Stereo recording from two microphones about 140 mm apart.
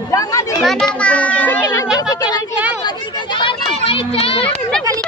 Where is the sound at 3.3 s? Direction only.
40° left (ahead or behind).